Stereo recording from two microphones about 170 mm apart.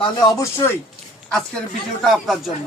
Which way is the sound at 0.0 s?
25° left (ahead or behind).